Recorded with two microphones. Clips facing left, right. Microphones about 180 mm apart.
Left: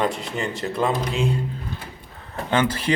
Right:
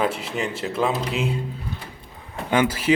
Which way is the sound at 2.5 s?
10° right (ahead or behind).